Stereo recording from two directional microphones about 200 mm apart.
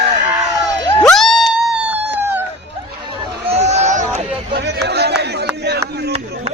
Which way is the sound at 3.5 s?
35° right (ahead or behind).